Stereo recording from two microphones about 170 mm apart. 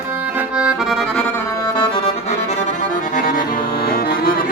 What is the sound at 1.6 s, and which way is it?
Accordion, 25° left (ahead or behind).